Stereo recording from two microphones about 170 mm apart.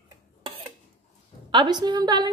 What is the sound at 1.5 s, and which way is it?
Speech, 25° right (ahead or behind).